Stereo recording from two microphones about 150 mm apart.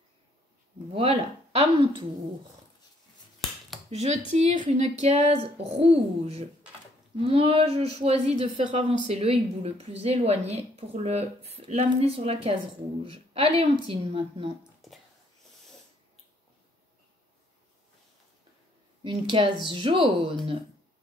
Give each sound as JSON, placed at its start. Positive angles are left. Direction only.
{"t": 0.9, "sound": "speech", "side_deg": -40}
{"t": 3.9, "sound": "speech", "side_deg": -45}
{"t": 19.0, "sound": "speech", "side_deg": -35}